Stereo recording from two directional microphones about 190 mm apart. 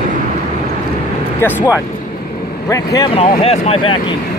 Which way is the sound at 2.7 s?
20° left (ahead or behind).